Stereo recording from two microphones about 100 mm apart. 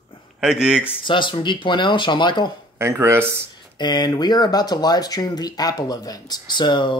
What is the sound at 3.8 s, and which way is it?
Speech, 45° left (ahead or behind).